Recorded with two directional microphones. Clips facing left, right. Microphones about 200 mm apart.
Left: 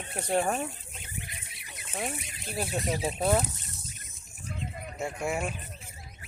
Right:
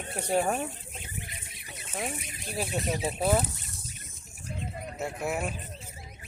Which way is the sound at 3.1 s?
5° right (ahead or behind).